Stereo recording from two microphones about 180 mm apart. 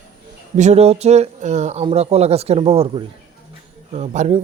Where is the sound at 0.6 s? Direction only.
40° right (ahead or behind).